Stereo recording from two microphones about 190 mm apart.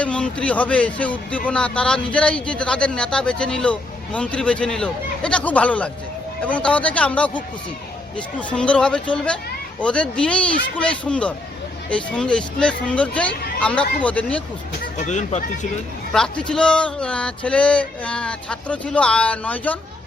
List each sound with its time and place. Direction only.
0.0 s speech: 5° left (ahead or behind)
14.9 s speech: 40° left (ahead or behind)
16.1 s speech: 5° left (ahead or behind)